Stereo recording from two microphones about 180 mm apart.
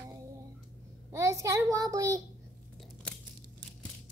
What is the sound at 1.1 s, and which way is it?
A child's voice, 15° right (ahead or behind).